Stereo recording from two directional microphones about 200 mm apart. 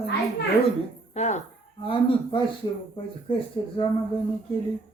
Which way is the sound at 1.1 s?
35° left (ahead or behind).